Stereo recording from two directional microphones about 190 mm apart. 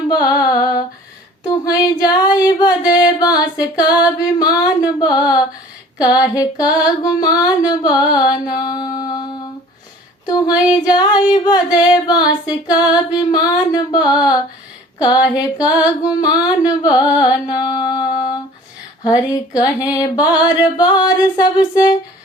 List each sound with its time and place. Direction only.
0.1 s female singing: 20° left (ahead or behind)
0.4 s a sound: 20° left (ahead or behind)
4.2 s female singing: 20° left (ahead or behind)
9.0 s humming: 20° left (ahead or behind)
10.2 s female singing: 20° left (ahead or behind)